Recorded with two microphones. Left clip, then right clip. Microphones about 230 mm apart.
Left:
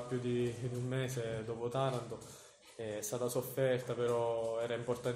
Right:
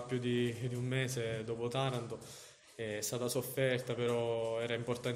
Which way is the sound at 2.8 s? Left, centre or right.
Right.